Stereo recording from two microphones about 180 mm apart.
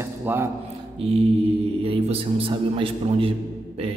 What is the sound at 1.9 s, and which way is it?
A man's voice, 30° right (ahead or behind).